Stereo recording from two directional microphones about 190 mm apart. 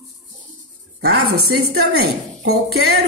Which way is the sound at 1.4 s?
55° right (ahead or behind).